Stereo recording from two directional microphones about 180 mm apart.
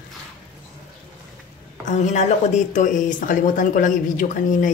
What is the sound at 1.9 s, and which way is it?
Speech, 40° left (ahead or behind).